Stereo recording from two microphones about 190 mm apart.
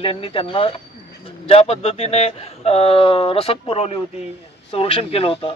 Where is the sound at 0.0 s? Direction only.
30° left (ahead or behind).